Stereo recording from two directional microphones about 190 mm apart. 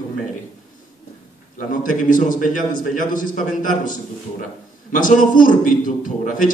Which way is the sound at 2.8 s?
45° left (ahead or behind).